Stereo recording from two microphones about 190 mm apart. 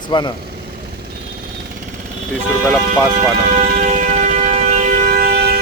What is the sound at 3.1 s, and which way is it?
Civil defense siren, 40° right (ahead or behind).